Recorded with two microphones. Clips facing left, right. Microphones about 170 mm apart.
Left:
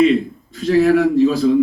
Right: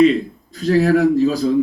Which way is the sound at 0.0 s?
40° right (ahead or behind).